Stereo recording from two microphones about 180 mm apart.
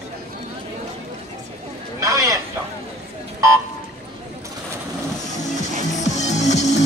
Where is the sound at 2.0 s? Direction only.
20° right (ahead or behind).